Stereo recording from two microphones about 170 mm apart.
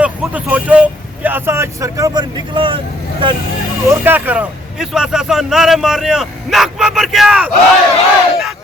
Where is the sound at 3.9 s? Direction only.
10° right (ahead or behind).